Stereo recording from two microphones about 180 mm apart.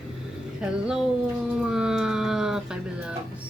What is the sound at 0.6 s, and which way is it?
Speech, 5° right (ahead or behind).